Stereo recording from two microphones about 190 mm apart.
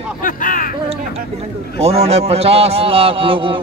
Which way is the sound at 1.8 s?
35° right (ahead or behind).